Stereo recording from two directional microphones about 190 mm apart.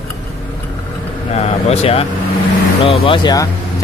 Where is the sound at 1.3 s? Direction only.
35° left (ahead or behind).